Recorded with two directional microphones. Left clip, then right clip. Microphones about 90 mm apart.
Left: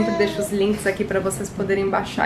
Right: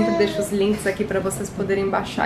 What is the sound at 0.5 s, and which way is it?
Speech, 10° right (ahead or behind).